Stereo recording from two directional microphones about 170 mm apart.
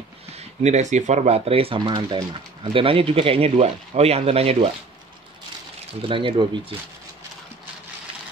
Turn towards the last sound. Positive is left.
turn(degrees=-30)  # may be behind; listen again after turning